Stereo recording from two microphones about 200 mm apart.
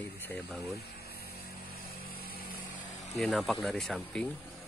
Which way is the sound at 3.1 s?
Centre (ahead or behind).